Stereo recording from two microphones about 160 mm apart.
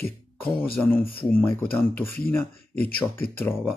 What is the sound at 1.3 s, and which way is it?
Speech, 10° left (ahead or behind).